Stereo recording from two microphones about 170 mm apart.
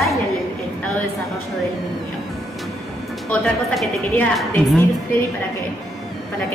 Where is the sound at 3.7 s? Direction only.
Centre (ahead or behind).